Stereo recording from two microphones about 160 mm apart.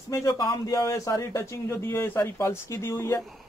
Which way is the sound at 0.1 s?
20° left (ahead or behind).